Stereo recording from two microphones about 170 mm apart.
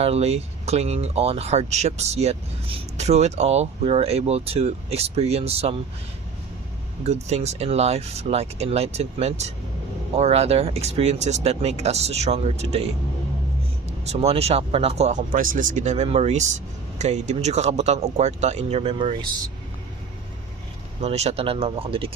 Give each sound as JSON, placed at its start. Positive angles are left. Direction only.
{"t": 0.0, "sound": "speech", "side_deg": -35}
{"t": 7.0, "sound": "speech", "side_deg": -40}
{"t": 14.0, "sound": "speech", "side_deg": -40}
{"t": 21.0, "sound": "speech", "side_deg": -40}